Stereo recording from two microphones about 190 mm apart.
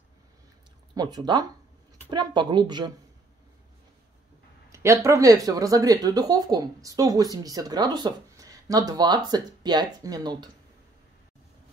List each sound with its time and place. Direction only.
0.9 s speech: 20° right (ahead or behind)
4.7 s speech: 15° right (ahead or behind)